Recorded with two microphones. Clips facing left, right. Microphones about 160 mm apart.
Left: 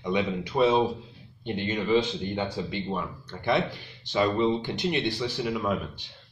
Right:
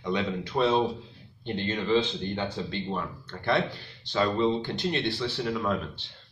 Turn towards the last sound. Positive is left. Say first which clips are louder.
# left 1 dB
turn(degrees=10)  # may be behind; listen again after turning